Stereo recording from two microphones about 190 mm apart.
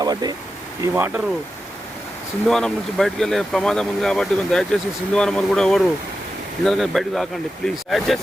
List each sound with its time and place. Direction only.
0.0 s speech: 20° right (ahead or behind)
0.8 s speech: 10° right (ahead or behind)
2.5 s speech: centre (ahead or behind)